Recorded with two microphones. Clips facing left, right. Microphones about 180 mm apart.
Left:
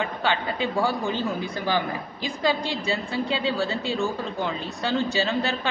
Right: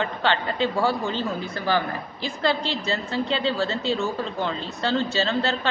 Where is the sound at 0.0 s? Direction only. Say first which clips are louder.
Right 1 dB; 10° left (ahead or behind).